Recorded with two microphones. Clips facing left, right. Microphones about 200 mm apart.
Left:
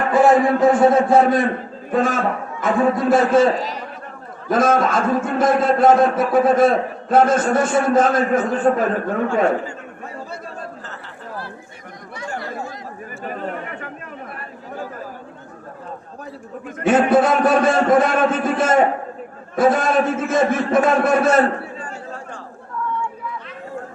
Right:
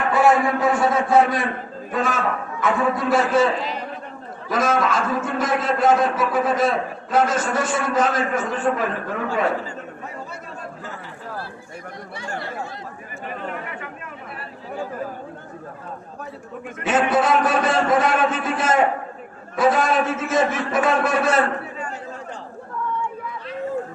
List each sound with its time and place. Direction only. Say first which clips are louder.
0.6 s a man's voice: left 6 dB; 50° left (ahead or behind)
2.6 s speech: left 4 dB; 30° left (ahead or behind)
3.0 s a man's voice: left 4 dB; 50° left (ahead or behind)
12.1 s chatter: left 3 dB; 30° right (ahead or behind)
13.2 s speech: left 3 dB; 40° left (ahead or behind)
16.8 s a man's voice: left 5 dB; 50° left (ahead or behind)
21.4 s a sound: left 3 dB; 35° left (ahead or behind)